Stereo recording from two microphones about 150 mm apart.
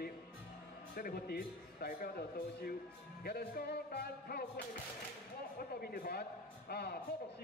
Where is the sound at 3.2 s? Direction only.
90° left.